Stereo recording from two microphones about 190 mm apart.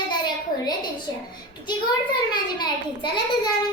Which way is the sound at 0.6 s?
20° left (ahead or behind).